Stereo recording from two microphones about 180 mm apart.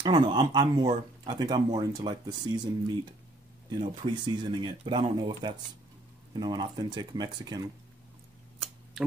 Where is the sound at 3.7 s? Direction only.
30° right (ahead or behind).